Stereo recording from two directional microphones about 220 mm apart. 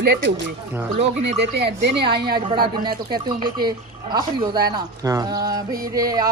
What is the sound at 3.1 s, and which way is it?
Speech, 20° right (ahead or behind).